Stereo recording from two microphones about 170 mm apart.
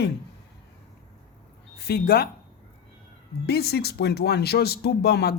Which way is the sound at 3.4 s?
70° left (ahead or behind).